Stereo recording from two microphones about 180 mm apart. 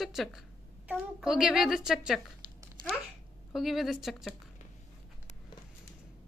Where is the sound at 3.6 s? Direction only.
Centre (ahead or behind).